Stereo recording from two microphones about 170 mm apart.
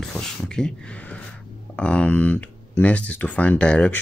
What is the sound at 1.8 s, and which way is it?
Speech, 5° left (ahead or behind).